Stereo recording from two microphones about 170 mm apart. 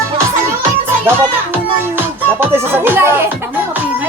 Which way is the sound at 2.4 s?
15° right (ahead or behind).